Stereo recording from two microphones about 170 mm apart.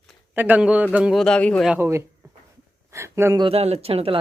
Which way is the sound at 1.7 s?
15° right (ahead or behind).